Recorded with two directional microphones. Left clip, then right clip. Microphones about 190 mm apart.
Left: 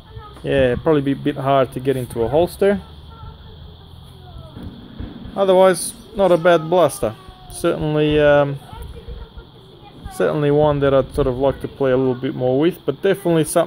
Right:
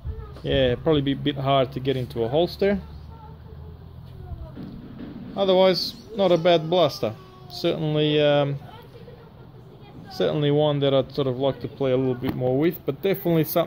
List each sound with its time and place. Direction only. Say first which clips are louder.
0.5 s speech: left 5 dB; 45° left (ahead or behind)
5.3 s speech: left 6 dB; 50° left (ahead or behind)
10.1 s speech: left 5 dB; 45° left (ahead or behind)